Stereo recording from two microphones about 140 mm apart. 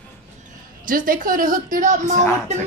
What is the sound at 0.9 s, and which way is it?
A woman's voice, 85° right.